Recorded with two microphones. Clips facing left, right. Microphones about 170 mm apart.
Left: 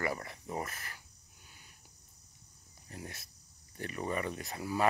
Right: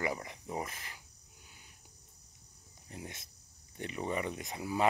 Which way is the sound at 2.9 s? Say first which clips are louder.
Even; 20° right (ahead or behind).